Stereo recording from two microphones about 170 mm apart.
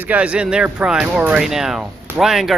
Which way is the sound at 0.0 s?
10° right (ahead or behind).